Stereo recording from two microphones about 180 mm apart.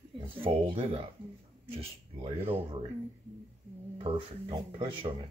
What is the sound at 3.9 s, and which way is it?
Speech, 25° right (ahead or behind).